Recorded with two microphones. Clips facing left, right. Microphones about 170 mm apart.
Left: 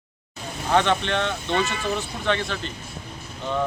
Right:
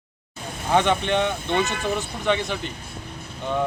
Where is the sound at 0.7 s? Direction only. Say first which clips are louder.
Right 1 dB; 15° right (ahead or behind).